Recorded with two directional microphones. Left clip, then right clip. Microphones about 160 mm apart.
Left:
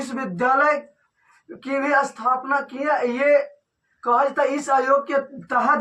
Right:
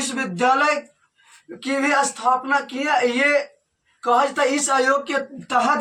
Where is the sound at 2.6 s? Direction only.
40° right (ahead or behind).